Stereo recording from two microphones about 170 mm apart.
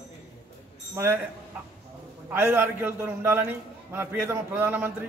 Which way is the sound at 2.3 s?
15° right (ahead or behind).